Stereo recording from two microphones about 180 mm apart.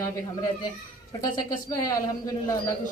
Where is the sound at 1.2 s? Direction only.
20° left (ahead or behind).